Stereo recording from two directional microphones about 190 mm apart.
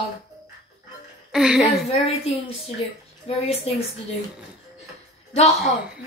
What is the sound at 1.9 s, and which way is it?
A woman's voice, 30° left (ahead or behind).